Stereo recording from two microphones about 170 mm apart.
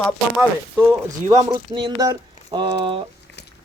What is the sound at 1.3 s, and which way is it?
A man's voice, 20° right (ahead or behind).